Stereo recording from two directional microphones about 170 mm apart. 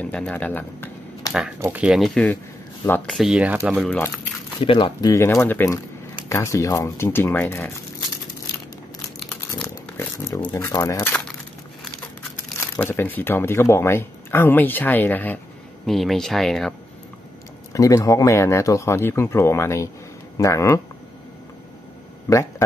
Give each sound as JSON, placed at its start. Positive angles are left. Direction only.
{"t": 0.0, "sound": "speech", "side_deg": 5}
{"t": 1.6, "sound": "speech", "side_deg": -10}
{"t": 4.6, "sound": "speech", "side_deg": 30}
{"t": 5.1, "sound": "speech", "side_deg": 15}
{"t": 9.6, "sound": "a sound", "side_deg": 10}
{"t": 10.1, "sound": "speech", "side_deg": 20}
{"t": 12.5, "sound": "speech", "side_deg": 15}
{"t": 17.7, "sound": "speech", "side_deg": 20}